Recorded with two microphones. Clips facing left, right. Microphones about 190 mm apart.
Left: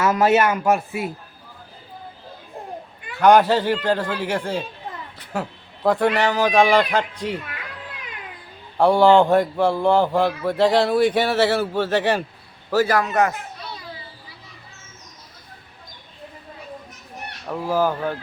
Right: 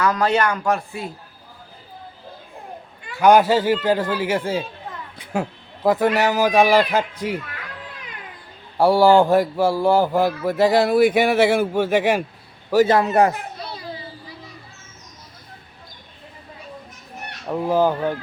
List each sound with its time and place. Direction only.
0.0 s speech: 20° left (ahead or behind)
3.2 s a man's voice: 5° right (ahead or behind)
8.8 s a man's voice: 5° right (ahead or behind)
12.7 s a child's voice: 20° right (ahead or behind)
17.4 s speech: 20° right (ahead or behind)